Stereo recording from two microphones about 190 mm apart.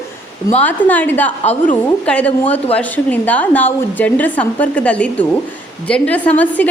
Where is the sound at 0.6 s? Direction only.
10° left (ahead or behind).